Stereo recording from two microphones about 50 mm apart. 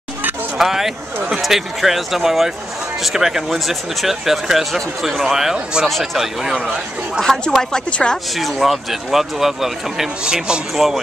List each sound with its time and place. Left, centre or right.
0.6 s speech: centre
7.5 s a woman's voice: centre
8.4 s speech: centre
10.2 s speech: centre
10.8 s speech: centre